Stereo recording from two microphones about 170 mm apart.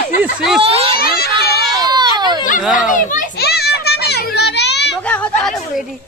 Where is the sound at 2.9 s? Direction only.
50° left (ahead or behind); by 4.8 s 90° left.